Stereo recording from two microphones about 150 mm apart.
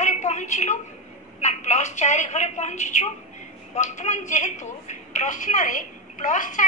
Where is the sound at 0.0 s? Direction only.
50° left (ahead or behind).